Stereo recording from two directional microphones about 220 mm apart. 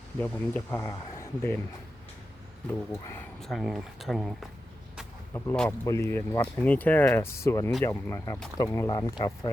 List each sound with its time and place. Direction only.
0.2 s speech: 10° left (ahead or behind)
2.9 s speech: 10° left (ahead or behind)
3.4 s speech: centre (ahead or behind); by 9.5 s 15° left (ahead or behind)